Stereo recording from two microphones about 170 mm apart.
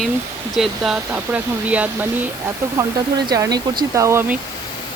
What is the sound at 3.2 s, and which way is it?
Speech, 20° right (ahead or behind).